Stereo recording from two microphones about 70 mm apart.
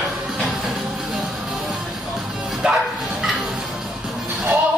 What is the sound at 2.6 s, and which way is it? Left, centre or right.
Bow-wow, centre.